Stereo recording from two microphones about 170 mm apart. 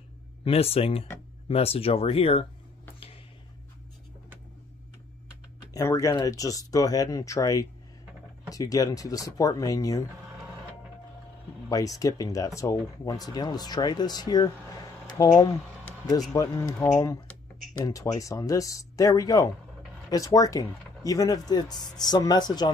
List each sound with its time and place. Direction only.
0.4 s speech: 35° left (ahead or behind)
5.7 s speech: 20° left (ahead or behind)
11.7 s speech: 20° left (ahead or behind)